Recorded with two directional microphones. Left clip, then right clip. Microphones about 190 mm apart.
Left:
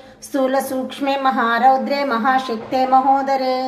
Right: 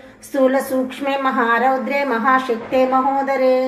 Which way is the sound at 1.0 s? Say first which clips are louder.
Left 3 dB; 10° left (ahead or behind).